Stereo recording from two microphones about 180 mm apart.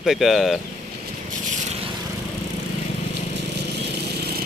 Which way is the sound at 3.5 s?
65° right (ahead or behind).